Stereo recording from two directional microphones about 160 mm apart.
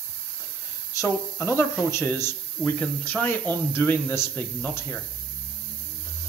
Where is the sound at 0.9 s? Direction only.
15° left (ahead or behind).